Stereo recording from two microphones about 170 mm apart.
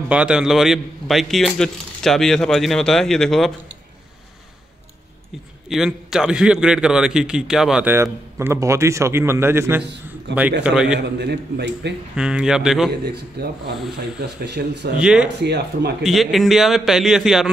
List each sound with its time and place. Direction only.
0.1 s a man's voice: 5° right (ahead or behind)
5.3 s a man's voice: centre (ahead or behind)
10.3 s a man's voice: 90° right
10.6 s a man's voice: 5° right (ahead or behind)
11.0 s a man's voice: 80° right
12.2 s a man's voice: 5° right (ahead or behind)
14.2 s a man's voice: 80° right
15.0 s a man's voice: 5° right (ahead or behind)
15.2 s a man's voice: 80° right
16.0 s a man's voice: centre (ahead or behind)